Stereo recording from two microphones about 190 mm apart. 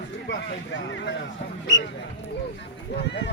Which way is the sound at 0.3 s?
75° left (ahead or behind).